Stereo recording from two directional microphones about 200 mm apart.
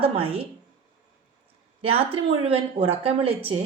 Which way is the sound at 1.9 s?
30° right (ahead or behind).